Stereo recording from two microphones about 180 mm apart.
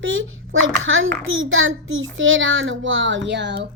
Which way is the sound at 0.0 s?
90° right.